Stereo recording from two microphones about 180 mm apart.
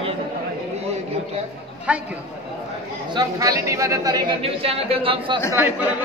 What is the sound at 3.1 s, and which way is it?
Speech, 20° right (ahead or behind).